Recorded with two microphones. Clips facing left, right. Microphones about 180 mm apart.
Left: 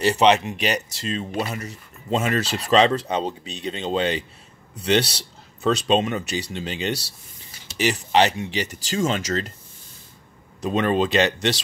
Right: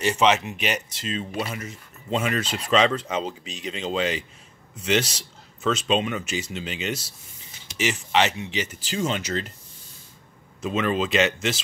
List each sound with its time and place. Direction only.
0.0 s speech: 35° left (ahead or behind)
10.6 s speech: 40° left (ahead or behind)